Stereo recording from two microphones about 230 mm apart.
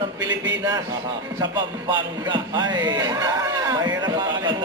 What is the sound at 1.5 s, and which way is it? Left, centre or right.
Speech, centre.